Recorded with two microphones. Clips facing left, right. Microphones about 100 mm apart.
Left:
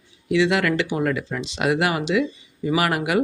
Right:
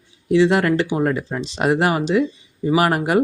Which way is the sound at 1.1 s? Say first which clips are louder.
Right 2 dB; 40° right (ahead or behind).